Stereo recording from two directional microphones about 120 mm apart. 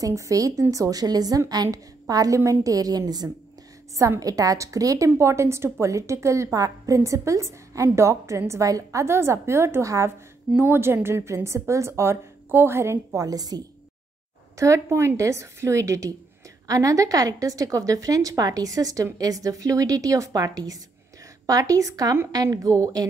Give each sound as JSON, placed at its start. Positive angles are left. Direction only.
{"t": 0.0, "sound": "a woman's voice", "side_deg": -25}